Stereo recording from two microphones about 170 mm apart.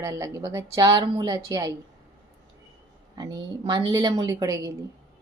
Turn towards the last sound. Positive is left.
turn(degrees=-20)  # may be behind; listen again after turning